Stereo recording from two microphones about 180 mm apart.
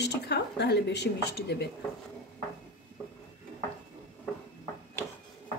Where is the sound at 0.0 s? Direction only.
65° left (ahead or behind).